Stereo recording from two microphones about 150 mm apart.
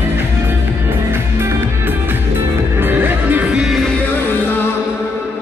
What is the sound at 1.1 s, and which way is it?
Music, 15° right (ahead or behind).